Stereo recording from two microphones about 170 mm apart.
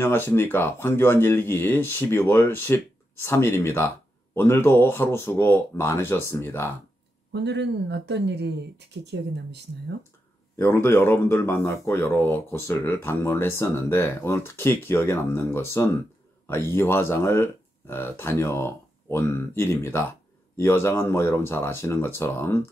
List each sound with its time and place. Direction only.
0.0 s speech: 15° left (ahead or behind)
7.3 s speech: 90° right
10.5 s speech: 15° left (ahead or behind)